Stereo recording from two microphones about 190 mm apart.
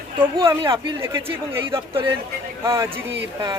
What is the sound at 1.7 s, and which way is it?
Speech, 25° right (ahead or behind).